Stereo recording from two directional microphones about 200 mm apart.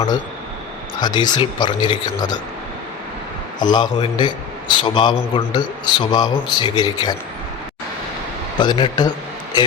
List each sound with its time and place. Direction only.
0.9 s speech: 20° left (ahead or behind)
3.6 s speech: 20° left (ahead or behind)
8.5 s a man's voice: 20° left (ahead or behind)